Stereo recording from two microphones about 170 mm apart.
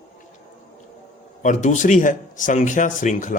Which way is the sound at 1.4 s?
45° left (ahead or behind).